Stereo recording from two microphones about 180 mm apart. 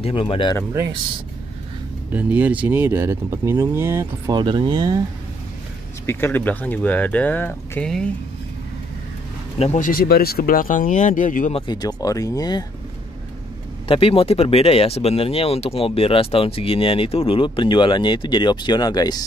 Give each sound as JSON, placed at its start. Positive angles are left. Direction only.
{"t": 0.0, "sound": "speech", "side_deg": 30}
{"t": 2.1, "sound": "speech", "side_deg": -10}
{"t": 4.4, "sound": "speech", "side_deg": -25}
{"t": 6.0, "sound": "speech", "side_deg": 10}
{"t": 9.6, "sound": "speech", "side_deg": 40}
{"t": 11.5, "sound": "speech", "side_deg": 25}
{"t": 13.8, "sound": "speech", "side_deg": 30}